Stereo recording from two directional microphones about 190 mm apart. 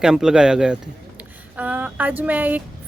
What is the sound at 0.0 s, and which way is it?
A woman's voice, 5° right (ahead or behind).